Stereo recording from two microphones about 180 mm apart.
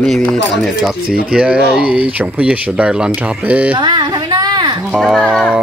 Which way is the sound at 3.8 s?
25° right (ahead or behind).